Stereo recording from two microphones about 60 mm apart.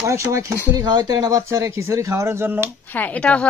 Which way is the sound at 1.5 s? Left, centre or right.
Right.